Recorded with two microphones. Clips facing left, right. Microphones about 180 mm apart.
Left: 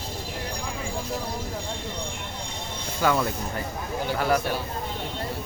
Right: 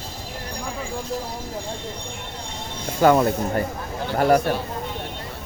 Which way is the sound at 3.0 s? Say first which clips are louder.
Right 8 dB; 45° right (ahead or behind).